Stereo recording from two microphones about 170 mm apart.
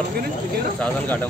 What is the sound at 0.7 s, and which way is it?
Speech, 10° left (ahead or behind).